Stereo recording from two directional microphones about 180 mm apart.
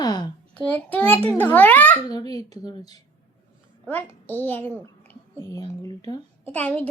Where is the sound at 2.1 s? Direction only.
20° left (ahead or behind).